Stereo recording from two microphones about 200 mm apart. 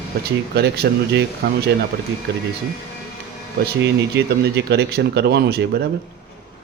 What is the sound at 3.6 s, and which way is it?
Speech, 55° right (ahead or behind).